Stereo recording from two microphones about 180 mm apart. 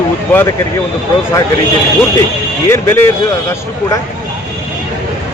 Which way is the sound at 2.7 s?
10° left (ahead or behind).